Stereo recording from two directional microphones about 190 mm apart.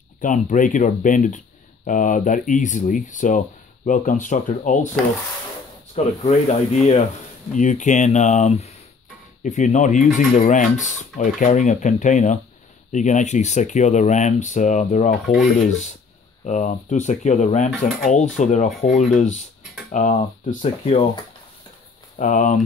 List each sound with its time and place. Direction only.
0.2 s speech: 45° left (ahead or behind)
5.9 s speech: 35° left (ahead or behind)
15.2 s rub: centre (ahead or behind)
15.7 s speech: 40° left (ahead or behind)
22.2 s speech: 40° left (ahead or behind)